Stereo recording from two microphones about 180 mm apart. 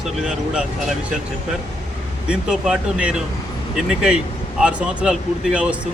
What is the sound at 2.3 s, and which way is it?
Speech, 5° right (ahead or behind).